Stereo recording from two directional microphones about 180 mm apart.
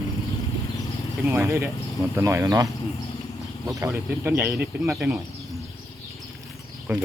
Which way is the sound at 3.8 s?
15° right (ahead or behind).